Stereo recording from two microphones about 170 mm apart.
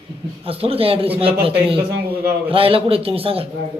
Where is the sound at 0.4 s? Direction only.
35° right (ahead or behind).